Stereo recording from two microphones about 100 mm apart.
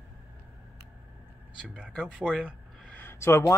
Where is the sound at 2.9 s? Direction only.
25° left (ahead or behind).